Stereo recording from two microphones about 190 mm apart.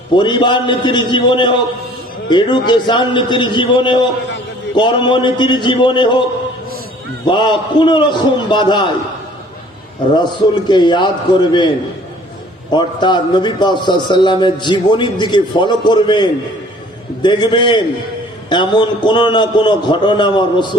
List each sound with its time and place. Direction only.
0.1 s a man's voice: 25° left (ahead or behind)
7.3 s a man's voice: 25° left (ahead or behind)
10.2 s a man's voice: 25° left (ahead or behind)
12.7 s a man's voice: 25° left (ahead or behind)